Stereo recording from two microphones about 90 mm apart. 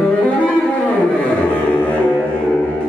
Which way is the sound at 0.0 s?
15° left (ahead or behind).